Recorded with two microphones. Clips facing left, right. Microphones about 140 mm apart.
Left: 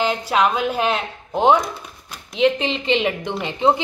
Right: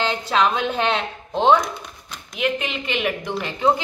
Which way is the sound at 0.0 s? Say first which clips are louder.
Left 2 dB; 10° left (ahead or behind).